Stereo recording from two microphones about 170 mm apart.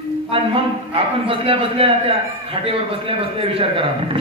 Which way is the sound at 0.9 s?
35° right (ahead or behind).